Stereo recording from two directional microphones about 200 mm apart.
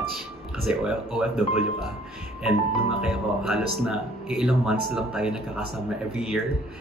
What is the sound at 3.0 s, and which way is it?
Speech, centre (ahead or behind).